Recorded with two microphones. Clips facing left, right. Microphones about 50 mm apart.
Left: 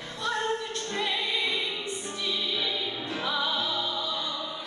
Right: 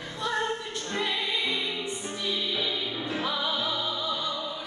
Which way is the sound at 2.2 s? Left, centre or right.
Centre.